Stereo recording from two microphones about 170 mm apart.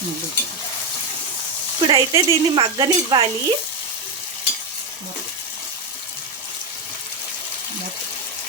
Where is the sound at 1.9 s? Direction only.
25° right (ahead or behind).